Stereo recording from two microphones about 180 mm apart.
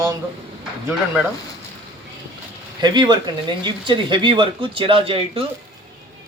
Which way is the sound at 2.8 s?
25° right (ahead or behind).